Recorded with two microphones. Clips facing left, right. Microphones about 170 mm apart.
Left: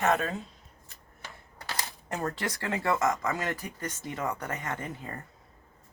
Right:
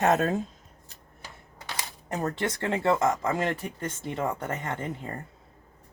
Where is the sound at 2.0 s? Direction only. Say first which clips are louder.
Right 4 dB; 20° right (ahead or behind).